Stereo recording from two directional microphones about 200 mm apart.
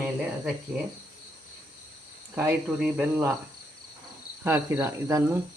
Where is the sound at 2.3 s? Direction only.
10° right (ahead or behind).